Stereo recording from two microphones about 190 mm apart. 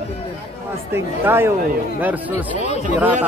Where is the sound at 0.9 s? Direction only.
10° right (ahead or behind).